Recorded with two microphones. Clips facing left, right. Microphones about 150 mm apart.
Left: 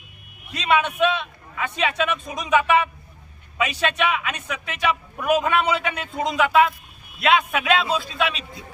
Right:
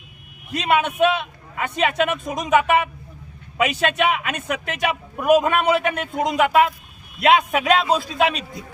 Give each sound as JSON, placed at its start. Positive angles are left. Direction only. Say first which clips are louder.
{"t": 0.5, "sound": "a man's voice", "louder": "right 1 dB", "side_deg": -50}